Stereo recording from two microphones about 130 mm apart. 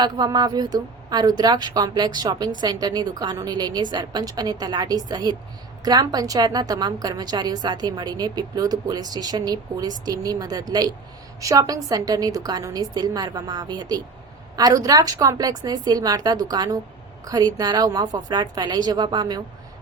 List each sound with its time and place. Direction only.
0.0 s a woman's voice: 30° right (ahead or behind)